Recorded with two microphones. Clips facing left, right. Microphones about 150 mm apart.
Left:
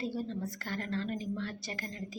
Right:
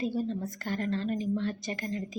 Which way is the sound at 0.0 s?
15° right (ahead or behind).